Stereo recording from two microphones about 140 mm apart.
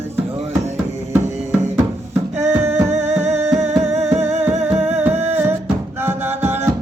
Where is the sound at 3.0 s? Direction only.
50° right (ahead or behind).